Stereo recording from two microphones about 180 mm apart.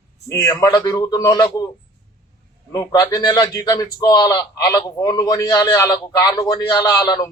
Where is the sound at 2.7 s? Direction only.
20° left (ahead or behind).